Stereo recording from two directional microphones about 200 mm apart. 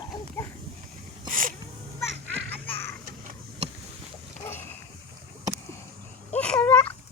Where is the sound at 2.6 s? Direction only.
10° left (ahead or behind).